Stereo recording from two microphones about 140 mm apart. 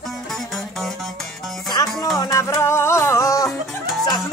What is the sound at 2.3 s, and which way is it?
Music, 20° left (ahead or behind).